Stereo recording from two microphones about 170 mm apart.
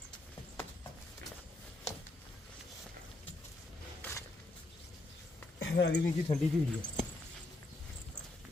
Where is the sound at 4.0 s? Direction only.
10° left (ahead or behind).